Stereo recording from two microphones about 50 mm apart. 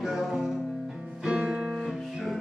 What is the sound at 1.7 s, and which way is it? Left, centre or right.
Music, centre.